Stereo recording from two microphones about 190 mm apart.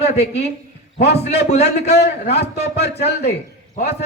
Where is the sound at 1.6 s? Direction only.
60° left (ahead or behind).